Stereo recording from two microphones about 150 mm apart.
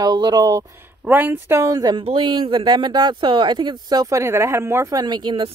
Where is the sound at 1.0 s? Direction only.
10° right (ahead or behind).